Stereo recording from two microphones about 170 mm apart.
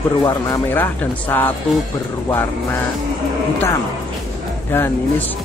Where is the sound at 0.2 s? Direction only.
20° left (ahead or behind).